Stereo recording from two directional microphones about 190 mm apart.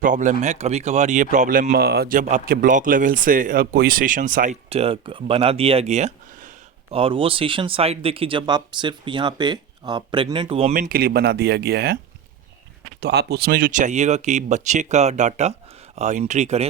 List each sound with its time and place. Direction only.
0.0 s speech: 40° right (ahead or behind)
4.7 s speech: 30° right (ahead or behind)
10.8 s speech: 50° right (ahead or behind)
13.0 s speech: 60° right (ahead or behind); by 16.6 s 35° right (ahead or behind)